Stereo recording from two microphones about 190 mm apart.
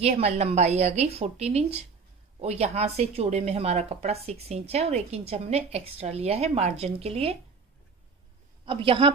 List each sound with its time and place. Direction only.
0.0 s a woman's voice: 35° right (ahead or behind)
8.6 s a woman's voice: 30° right (ahead or behind)